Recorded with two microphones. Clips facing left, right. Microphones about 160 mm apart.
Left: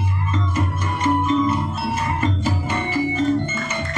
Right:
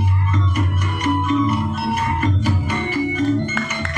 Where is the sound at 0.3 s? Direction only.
30° left (ahead or behind).